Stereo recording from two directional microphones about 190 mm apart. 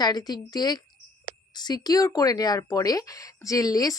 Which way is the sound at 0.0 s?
20° left (ahead or behind).